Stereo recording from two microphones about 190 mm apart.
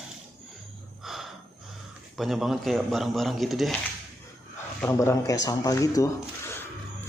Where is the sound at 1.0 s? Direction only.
Centre (ahead or behind).